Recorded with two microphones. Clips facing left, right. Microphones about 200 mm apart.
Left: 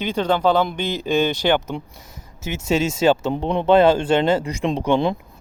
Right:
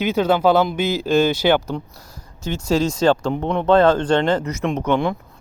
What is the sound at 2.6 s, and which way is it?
Speech, 25° left (ahead or behind).